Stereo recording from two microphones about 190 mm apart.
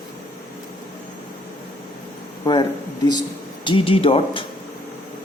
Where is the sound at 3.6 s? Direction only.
30° left (ahead or behind).